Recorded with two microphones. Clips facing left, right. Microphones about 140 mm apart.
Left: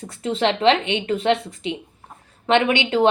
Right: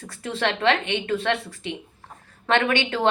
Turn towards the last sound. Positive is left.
turn(degrees=15)  # may be behind; listen again after turning